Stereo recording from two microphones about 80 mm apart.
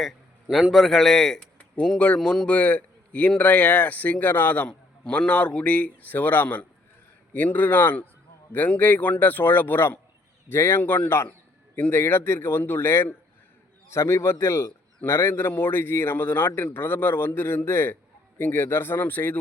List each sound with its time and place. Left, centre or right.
0.5 s a man's voice: centre; by 19.4 s left